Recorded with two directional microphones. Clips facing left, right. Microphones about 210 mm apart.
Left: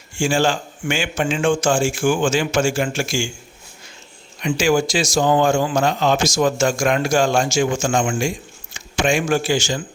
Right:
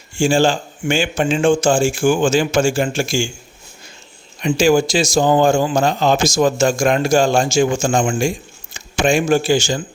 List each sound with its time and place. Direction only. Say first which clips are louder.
0.2 s speech: right 4 dB; 30° right (ahead or behind)
4.4 s speech: right 4 dB; 30° right (ahead or behind)